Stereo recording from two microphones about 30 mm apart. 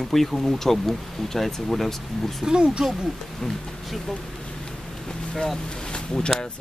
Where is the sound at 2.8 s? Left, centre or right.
Centre.